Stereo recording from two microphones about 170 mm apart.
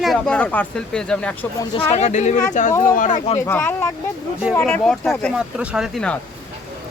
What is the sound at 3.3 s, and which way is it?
Speech, 15° left (ahead or behind).